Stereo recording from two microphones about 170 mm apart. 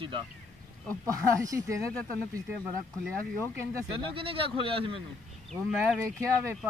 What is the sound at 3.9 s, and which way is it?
Speech, 30° right (ahead or behind).